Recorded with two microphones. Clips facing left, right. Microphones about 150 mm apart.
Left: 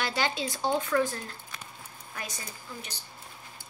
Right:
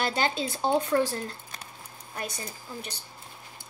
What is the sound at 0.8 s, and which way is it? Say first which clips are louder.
Speech: right 2 dB; 35° right (ahead or behind).